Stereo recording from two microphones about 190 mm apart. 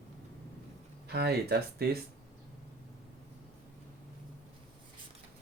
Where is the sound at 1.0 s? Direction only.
60° right (ahead or behind).